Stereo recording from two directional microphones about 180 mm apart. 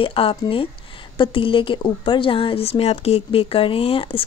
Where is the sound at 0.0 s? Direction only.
30° left (ahead or behind).